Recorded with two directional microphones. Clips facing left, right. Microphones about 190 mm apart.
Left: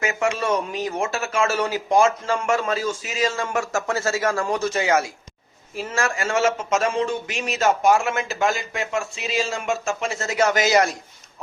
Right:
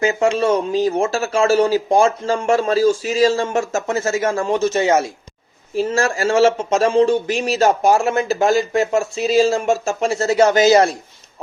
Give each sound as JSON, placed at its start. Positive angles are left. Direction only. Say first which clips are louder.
{"t": 0.0, "sound": "a man's voice", "louder": "right 7 dB", "side_deg": -30}